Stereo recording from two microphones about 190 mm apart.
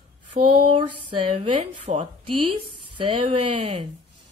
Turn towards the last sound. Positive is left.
turn(degrees=-25)  # may be behind; listen again after turning